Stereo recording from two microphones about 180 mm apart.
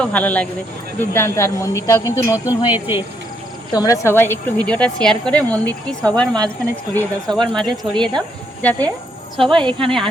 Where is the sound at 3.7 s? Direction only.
20° left (ahead or behind).